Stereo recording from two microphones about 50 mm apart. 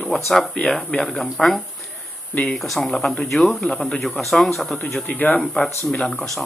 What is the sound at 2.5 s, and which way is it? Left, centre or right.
Speech, centre.